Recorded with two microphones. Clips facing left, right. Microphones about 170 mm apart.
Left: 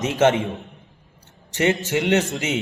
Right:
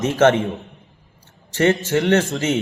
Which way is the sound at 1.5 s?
20° left (ahead or behind).